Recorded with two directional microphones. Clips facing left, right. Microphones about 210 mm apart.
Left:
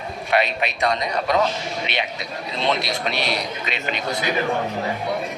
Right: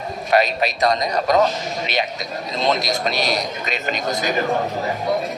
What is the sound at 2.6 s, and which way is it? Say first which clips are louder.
A man's voice: right 3 dB; 40° right (ahead or behind).